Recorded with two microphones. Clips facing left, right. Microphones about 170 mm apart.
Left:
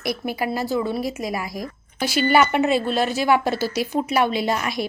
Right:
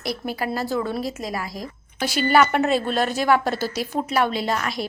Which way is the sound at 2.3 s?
10° left (ahead or behind).